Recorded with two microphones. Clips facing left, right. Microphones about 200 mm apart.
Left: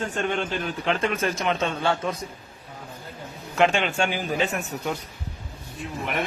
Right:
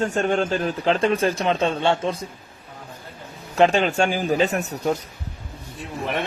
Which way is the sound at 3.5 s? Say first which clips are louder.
Right 4 dB; 35° right (ahead or behind).